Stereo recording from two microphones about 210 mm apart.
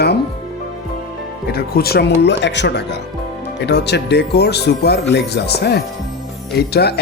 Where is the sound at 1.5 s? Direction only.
45° left (ahead or behind).